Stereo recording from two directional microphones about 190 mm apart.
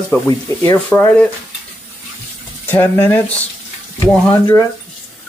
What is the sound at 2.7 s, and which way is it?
Speech, 10° left (ahead or behind).